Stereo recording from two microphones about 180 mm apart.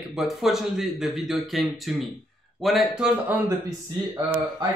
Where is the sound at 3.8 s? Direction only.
20° right (ahead or behind).